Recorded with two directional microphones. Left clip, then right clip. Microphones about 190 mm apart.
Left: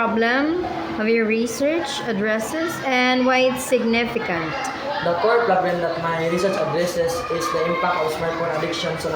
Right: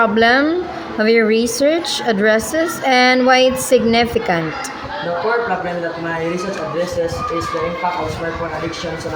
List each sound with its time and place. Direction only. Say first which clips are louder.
0.0 s a woman's voice: right 7 dB; 30° right (ahead or behind)